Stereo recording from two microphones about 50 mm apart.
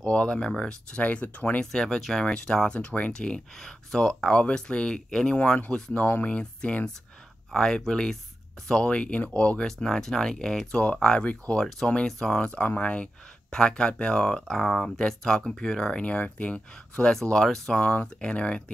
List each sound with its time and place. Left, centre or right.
0.0 s speech: centre
1.6 s speech: centre
3.1 s speech: centre
4.3 s speech: left
5.4 s speech: left
5.7 s speech: centre
7.5 s speech: centre
9.7 s speech: centre
10.7 s speech: left
11.5 s speech: centre; by 13.1 s left
13.5 s speech: centre
17.7 s speech: left
18.0 s speech: left